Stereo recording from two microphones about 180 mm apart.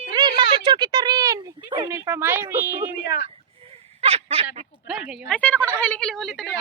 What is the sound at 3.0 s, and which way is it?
Speech, 80° left.